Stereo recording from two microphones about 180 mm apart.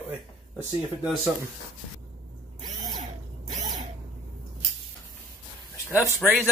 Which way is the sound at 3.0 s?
40° right (ahead or behind).